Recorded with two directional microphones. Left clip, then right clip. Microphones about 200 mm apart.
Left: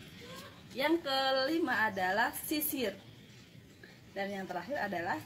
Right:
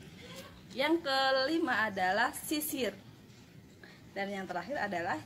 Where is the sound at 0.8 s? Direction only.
Centre (ahead or behind).